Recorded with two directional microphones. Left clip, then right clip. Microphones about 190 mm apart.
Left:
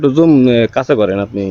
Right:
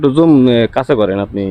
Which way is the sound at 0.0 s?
15° right (ahead or behind).